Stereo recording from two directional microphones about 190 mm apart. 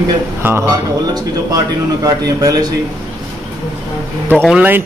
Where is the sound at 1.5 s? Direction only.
20° right (ahead or behind).